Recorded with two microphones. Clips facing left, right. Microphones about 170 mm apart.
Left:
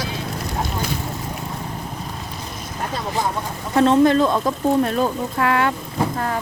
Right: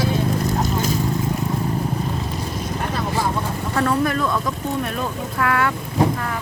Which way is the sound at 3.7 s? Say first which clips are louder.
Left 7 dB; 25° left (ahead or behind).